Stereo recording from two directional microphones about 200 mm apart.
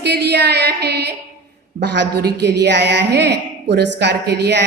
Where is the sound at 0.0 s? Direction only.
55° right (ahead or behind).